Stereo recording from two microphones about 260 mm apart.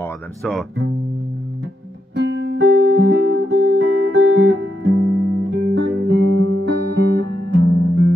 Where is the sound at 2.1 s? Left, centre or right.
Right.